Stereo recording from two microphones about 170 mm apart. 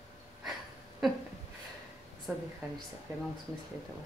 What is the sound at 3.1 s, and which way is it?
Speech, 15° right (ahead or behind).